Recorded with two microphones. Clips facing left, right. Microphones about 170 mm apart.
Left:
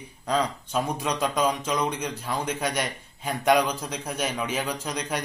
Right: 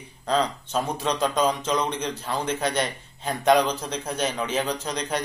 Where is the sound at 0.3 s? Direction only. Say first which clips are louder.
Right 2 dB; 10° left (ahead or behind).